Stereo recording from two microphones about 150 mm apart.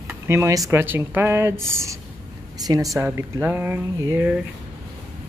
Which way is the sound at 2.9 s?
15° right (ahead or behind).